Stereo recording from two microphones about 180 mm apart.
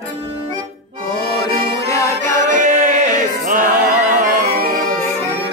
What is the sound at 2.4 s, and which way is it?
Music, 45° right (ahead or behind).